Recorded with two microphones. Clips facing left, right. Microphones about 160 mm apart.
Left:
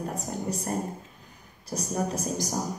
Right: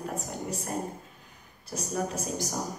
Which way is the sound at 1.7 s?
35° left (ahead or behind).